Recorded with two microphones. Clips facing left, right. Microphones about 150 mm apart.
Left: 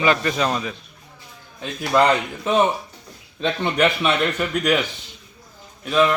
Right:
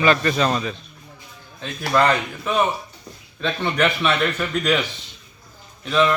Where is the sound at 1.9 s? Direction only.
15° left (ahead or behind).